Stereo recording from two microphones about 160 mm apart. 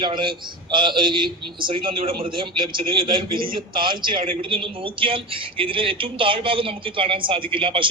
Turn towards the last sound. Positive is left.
turn(degrees=-30)  # may be behind; listen again after turning